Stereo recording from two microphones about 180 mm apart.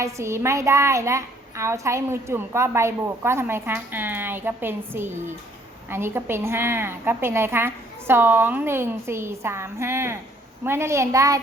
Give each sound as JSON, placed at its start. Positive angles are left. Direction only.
{"t": 0.0, "sound": "a woman's voice", "side_deg": -15}